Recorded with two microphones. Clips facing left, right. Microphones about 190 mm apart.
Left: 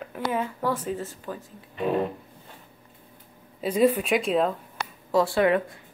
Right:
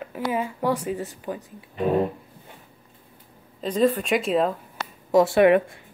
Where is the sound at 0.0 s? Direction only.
5° right (ahead or behind).